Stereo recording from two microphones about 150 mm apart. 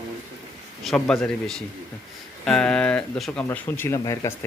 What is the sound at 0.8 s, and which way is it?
Speech, centre (ahead or behind).